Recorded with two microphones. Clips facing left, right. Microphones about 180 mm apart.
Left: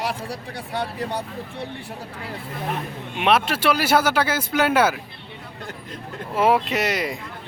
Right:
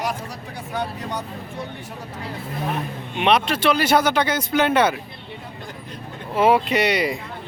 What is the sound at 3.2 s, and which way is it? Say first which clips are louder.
Speech: right 1 dB; 5° left (ahead or behind).